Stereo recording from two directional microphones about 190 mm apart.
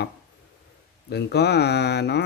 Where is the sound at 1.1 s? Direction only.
60° left (ahead or behind).